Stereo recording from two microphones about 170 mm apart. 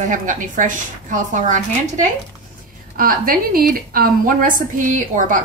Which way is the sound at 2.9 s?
60° right (ahead or behind).